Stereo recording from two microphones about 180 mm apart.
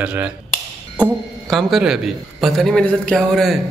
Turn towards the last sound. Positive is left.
turn(degrees=0)  # may be behind; listen again after turning